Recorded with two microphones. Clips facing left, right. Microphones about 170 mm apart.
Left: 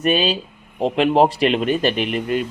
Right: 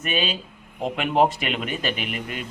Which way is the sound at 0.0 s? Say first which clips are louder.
Left 8 dB; 35° left (ahead or behind).